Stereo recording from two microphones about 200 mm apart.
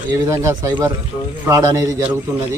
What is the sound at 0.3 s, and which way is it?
Speech, 15° right (ahead or behind).